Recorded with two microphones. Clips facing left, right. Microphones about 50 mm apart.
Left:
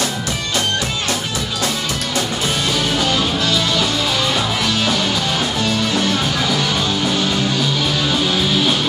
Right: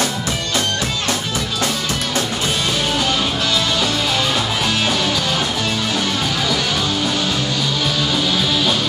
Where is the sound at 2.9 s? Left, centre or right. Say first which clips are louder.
Left 1 dB; centre.